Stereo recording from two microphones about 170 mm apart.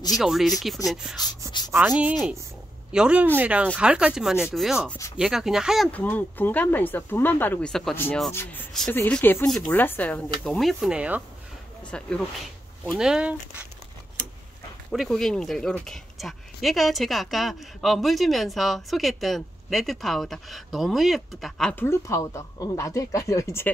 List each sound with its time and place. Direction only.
0.2 s speech: centre (ahead or behind)
1.5 s rub: 25° left (ahead or behind)
1.9 s speech: 5° right (ahead or behind)
5.9 s speech: 10° left (ahead or behind); by 11.2 s 10° right (ahead or behind)
11.9 s speech: 5° left (ahead or behind)
14.9 s speech: centre (ahead or behind)
21.8 s speech: 20° left (ahead or behind)